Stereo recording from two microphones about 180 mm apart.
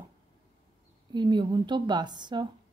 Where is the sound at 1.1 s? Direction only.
25° right (ahead or behind).